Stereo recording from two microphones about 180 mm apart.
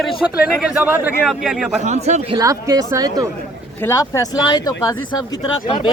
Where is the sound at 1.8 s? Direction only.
40° right (ahead or behind).